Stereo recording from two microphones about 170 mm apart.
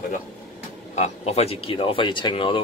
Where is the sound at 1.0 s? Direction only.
40° left (ahead or behind).